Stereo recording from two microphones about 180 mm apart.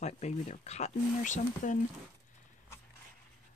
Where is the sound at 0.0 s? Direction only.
40° left (ahead or behind).